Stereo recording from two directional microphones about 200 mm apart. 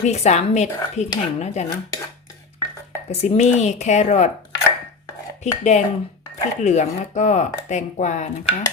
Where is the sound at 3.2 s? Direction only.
35° left (ahead or behind).